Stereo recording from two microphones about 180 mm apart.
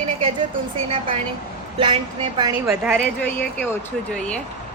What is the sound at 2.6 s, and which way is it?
Speech, 5° right (ahead or behind).